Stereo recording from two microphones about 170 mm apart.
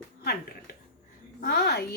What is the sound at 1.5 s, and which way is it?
Speech, 75° left (ahead or behind).